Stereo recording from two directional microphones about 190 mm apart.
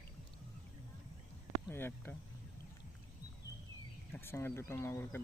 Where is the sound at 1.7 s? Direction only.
10° left (ahead or behind).